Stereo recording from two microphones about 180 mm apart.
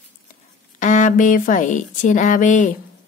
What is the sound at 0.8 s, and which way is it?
Speech, 45° left (ahead or behind).